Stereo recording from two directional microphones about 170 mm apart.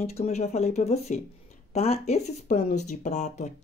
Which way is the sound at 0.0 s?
40° left (ahead or behind).